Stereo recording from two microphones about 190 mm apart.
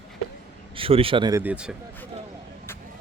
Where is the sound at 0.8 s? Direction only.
30° right (ahead or behind); by 1.7 s 5° right (ahead or behind).